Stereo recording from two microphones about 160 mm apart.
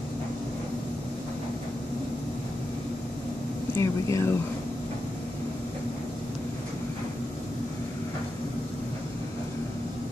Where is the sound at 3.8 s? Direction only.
20° left (ahead or behind).